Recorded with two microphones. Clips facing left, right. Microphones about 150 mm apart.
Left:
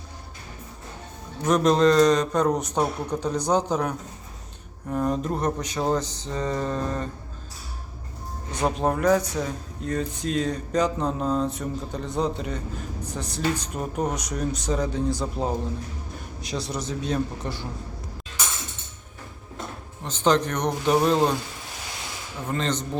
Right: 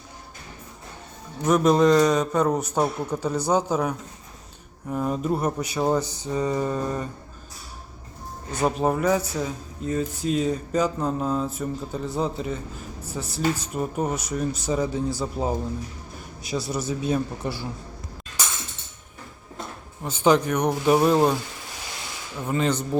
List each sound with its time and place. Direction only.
1.5 s a man's voice: 10° right (ahead or behind)
8.5 s a man's voice: 5° right (ahead or behind)
20.0 s a man's voice: 10° right (ahead or behind)
22.4 s a man's voice: 10° right (ahead or behind)